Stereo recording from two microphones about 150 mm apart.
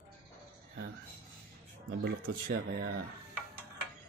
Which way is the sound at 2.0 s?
85° right.